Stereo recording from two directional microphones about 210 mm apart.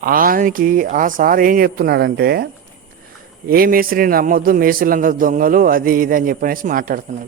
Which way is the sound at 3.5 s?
45° right (ahead or behind).